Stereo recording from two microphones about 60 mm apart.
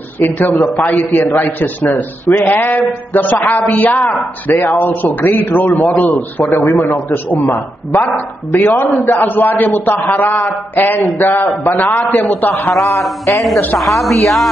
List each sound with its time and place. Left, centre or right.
0.2 s a man's voice: left
6.5 s a man's voice: left
12.7 s speech: centre